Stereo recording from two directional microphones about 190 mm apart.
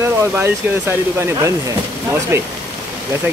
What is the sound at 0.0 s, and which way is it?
Speech, 15° right (ahead or behind).